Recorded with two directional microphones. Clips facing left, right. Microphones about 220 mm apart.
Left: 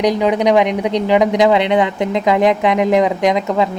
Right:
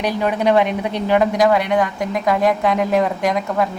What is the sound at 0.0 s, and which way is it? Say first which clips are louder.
A woman's voice: left 4 dB; 15° left (ahead or behind).